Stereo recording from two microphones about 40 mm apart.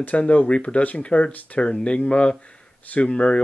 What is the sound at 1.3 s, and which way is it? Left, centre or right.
Speech, left.